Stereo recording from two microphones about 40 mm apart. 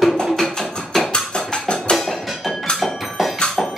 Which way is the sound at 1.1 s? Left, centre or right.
Centre.